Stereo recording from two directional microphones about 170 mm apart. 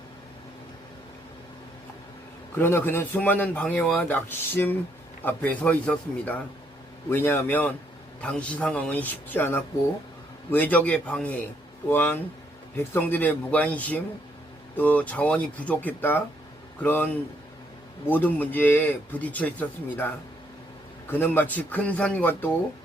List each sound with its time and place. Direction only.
2.6 s speech: 15° left (ahead or behind)
18.1 s speech: 10° left (ahead or behind)
21.1 s speech: 10° left (ahead or behind)